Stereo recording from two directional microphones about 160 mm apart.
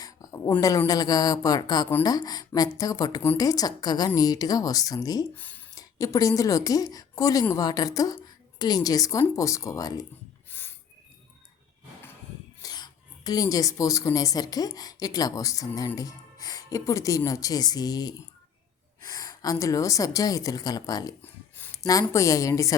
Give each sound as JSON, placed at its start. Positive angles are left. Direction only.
{"t": 0.0, "sound": "a woman's voice", "side_deg": 20}
{"t": 5.3, "sound": "a woman's voice", "side_deg": 10}
{"t": 10.5, "sound": "a sound", "side_deg": 15}
{"t": 12.6, "sound": "a woman's voice", "side_deg": 25}
{"t": 21.2, "sound": "a sound", "side_deg": 10}
{"t": 22.1, "sound": "a woman's voice", "side_deg": 20}